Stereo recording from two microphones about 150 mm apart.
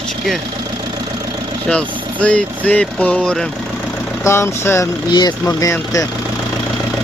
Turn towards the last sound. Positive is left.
turn(degrees=20)  # may be behind; listen again after turning